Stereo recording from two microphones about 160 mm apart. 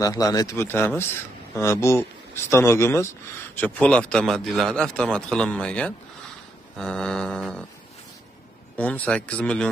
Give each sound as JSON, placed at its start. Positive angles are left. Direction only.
{"t": 0.0, "sound": "a man's voice", "side_deg": 20}
{"t": 8.7, "sound": "speech", "side_deg": 10}